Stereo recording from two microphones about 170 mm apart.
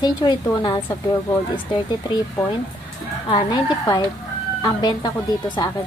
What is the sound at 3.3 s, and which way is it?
Speech, 25° left (ahead or behind).